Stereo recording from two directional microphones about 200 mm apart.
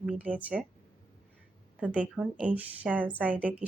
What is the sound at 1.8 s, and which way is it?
Speech, 5° right (ahead or behind).